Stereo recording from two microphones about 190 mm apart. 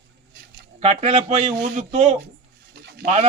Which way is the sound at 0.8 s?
35° right (ahead or behind).